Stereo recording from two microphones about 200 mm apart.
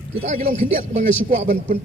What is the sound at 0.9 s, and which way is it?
Speech, 35° right (ahead or behind).